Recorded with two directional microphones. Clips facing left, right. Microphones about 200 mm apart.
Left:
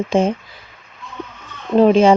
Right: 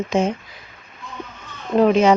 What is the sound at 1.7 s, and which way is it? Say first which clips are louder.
Speech: left 3 dB; 30° left (ahead or behind).